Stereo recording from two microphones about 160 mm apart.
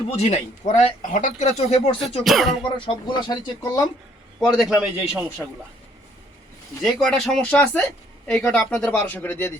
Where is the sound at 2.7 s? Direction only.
30° left (ahead or behind).